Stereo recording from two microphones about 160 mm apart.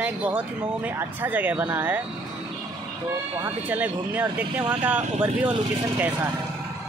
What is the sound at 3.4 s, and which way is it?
Speech, 10° right (ahead or behind).